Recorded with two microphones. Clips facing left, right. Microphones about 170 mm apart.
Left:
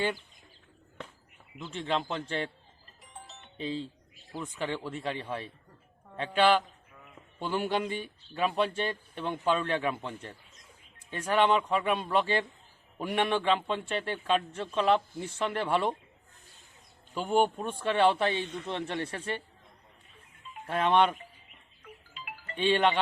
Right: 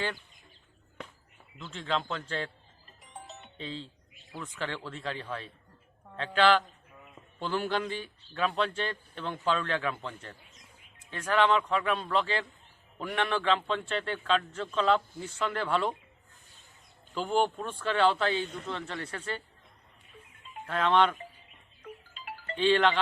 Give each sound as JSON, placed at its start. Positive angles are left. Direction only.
{"t": 1.6, "sound": "a man's voice", "side_deg": 20}
{"t": 3.0, "sound": "music", "side_deg": -20}
{"t": 4.4, "sound": "a man's voice", "side_deg": 15}
{"t": 17.2, "sound": "speech", "side_deg": 0}
{"t": 17.6, "sound": "a man's voice", "side_deg": 20}
{"t": 20.7, "sound": "a man's voice", "side_deg": 20}
{"t": 22.1, "sound": "music", "side_deg": -40}
{"t": 22.5, "sound": "a man's voice", "side_deg": 20}